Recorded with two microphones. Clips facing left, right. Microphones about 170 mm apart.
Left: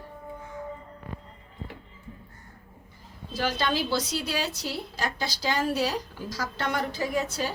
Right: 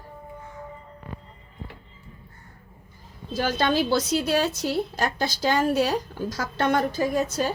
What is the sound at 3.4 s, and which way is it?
Speech, 45° right (ahead or behind).